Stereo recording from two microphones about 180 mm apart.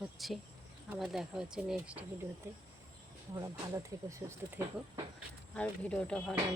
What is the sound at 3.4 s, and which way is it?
Speech, 20° right (ahead or behind).